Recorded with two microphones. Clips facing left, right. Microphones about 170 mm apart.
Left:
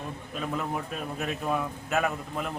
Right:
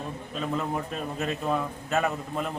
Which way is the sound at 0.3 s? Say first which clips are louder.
Right 2 dB; 5° left (ahead or behind).